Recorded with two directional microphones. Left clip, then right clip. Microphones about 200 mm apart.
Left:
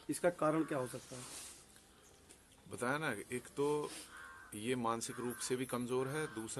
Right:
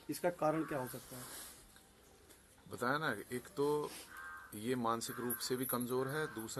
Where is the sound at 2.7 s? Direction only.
5° left (ahead or behind).